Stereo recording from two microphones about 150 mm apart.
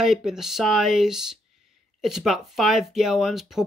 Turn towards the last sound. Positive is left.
turn(degrees=0)  # may be behind; listen again after turning